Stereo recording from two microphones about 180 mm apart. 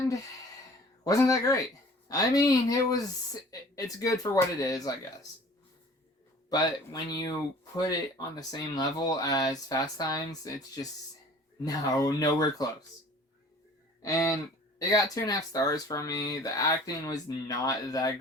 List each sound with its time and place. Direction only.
1.0 s speech: 20° left (ahead or behind)
6.5 s speech: 20° left (ahead or behind)
8.4 s speech: 20° left (ahead or behind)
14.0 s speech: 15° left (ahead or behind)